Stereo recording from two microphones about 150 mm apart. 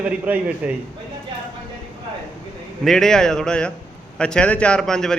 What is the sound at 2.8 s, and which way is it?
A man's voice, centre (ahead or behind).